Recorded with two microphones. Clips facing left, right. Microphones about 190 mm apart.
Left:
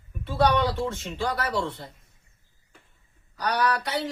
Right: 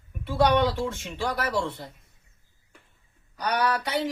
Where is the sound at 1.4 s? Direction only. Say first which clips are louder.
Even; 15° right (ahead or behind).